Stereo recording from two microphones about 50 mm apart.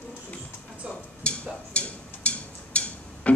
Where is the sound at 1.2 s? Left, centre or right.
Left.